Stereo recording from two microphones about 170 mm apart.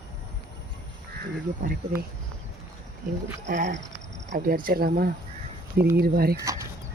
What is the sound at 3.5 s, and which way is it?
Speech, 50° right (ahead or behind).